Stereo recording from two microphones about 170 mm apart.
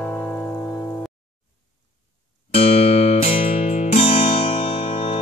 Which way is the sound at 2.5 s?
35° left (ahead or behind).